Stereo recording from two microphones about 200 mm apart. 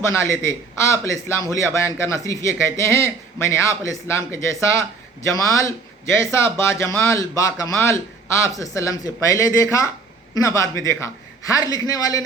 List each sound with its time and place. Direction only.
0.0 s a man's voice: 15° left (ahead or behind)